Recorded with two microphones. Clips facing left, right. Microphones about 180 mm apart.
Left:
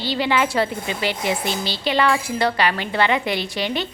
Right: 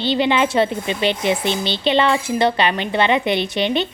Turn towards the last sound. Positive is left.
turn(degrees=-20)  # may be behind; listen again after turning